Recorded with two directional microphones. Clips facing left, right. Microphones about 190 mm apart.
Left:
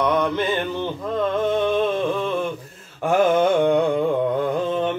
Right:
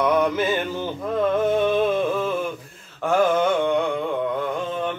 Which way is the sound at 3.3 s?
35° left (ahead or behind).